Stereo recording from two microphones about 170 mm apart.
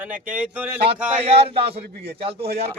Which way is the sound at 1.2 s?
35° right (ahead or behind).